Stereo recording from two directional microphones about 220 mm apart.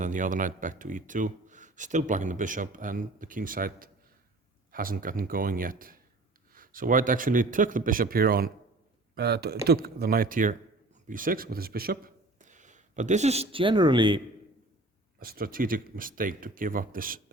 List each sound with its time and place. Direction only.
0.0 s speech: 35° right (ahead or behind); by 14.2 s 20° right (ahead or behind)
15.2 s speech: 40° right (ahead or behind)